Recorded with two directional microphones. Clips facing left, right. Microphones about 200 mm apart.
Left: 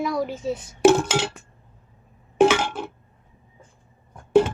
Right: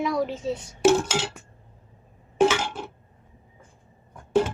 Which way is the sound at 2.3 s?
60° left (ahead or behind).